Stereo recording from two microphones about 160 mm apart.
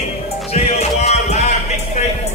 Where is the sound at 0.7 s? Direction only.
40° left (ahead or behind).